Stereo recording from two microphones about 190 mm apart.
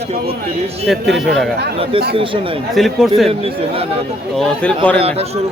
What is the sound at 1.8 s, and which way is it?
Speech, 30° right (ahead or behind).